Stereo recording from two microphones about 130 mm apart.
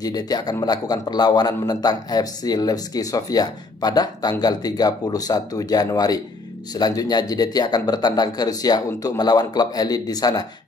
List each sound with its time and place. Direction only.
0.0 s a man's voice: 30° left (ahead or behind)